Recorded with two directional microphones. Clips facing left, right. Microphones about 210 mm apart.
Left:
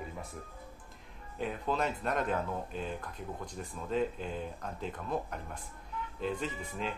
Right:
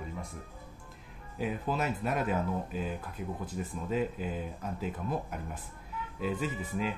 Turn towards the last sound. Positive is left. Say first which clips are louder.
# right 4 dB
turn(degrees=-5)  # may be behind; listen again after turning